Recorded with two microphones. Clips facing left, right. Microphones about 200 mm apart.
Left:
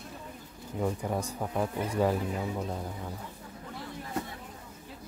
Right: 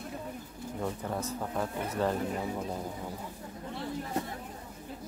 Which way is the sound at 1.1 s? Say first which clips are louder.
Left 2 dB; 10° left (ahead or behind).